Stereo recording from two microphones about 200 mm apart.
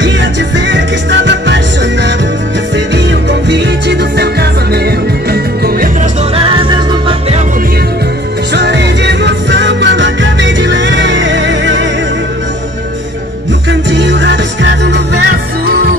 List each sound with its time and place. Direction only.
0.0 s music: 65° right (ahead or behind)
3.4 s music: 60° right (ahead or behind)
6.3 s music: 25° right (ahead or behind)
8.5 s music: 60° right (ahead or behind)
13.7 s music: 60° right (ahead or behind)